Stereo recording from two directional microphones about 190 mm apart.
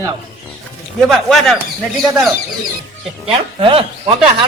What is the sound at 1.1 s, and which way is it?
Speech, 5° left (ahead or behind).